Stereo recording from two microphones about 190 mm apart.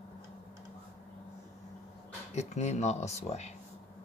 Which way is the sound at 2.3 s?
35° left (ahead or behind).